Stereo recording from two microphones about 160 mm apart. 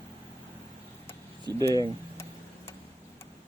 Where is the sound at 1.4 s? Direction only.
25° right (ahead or behind).